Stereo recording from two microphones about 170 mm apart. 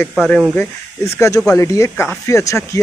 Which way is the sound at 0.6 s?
15° left (ahead or behind).